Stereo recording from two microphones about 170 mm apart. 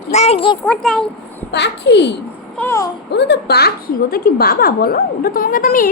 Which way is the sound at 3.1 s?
75° left (ahead or behind).